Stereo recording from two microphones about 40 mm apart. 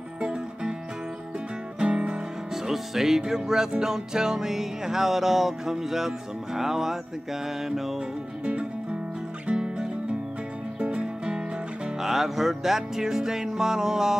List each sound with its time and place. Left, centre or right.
0.2 s music: right
1.8 s music: right
2.5 s music: centre
9.5 s music: right
11.3 s music: centre